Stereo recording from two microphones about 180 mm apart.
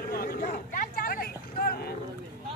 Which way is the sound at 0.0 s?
55° left (ahead or behind).